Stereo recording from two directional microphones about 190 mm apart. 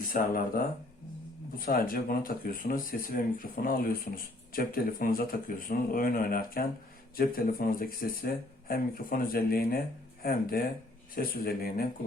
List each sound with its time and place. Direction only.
0.1 s speech: 50° left (ahead or behind)